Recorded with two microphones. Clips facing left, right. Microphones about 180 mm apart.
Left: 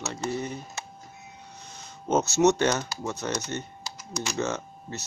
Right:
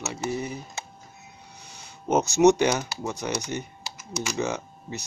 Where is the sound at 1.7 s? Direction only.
10° right (ahead or behind).